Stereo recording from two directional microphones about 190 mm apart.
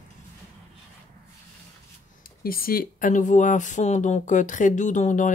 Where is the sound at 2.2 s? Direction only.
50° left (ahead or behind).